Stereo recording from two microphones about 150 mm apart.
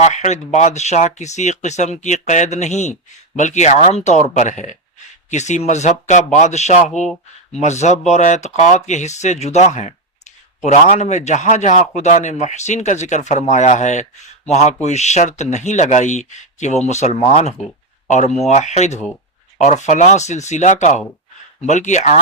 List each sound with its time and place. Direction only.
0.0 s speech: 50° left (ahead or behind)